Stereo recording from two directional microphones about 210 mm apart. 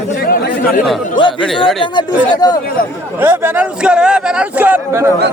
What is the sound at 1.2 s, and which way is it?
Speech, 20° left (ahead or behind).